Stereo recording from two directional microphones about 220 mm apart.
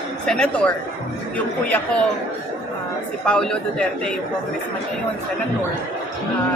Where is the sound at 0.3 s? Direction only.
5° left (ahead or behind).